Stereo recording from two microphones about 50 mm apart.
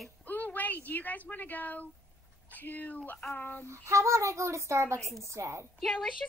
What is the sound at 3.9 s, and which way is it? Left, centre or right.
A woman's voice, right.